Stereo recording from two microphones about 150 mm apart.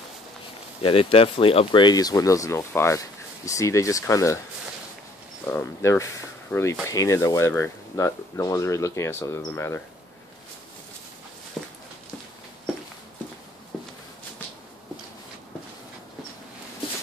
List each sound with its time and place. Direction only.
0.8 s speech: 40° left (ahead or behind); by 4.4 s 20° left (ahead or behind)
5.5 s speech: 15° left (ahead or behind)
11.6 s a sound: centre (ahead or behind)